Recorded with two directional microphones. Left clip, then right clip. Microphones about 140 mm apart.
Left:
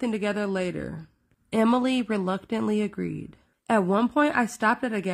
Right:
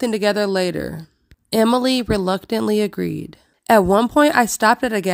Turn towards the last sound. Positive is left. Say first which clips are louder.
# right 8 dB
turn(degrees=-50)  # may be behind; listen again after turning